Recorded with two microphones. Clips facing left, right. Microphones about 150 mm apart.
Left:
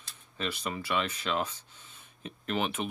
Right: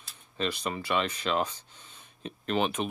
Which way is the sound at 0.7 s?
20° right (ahead or behind).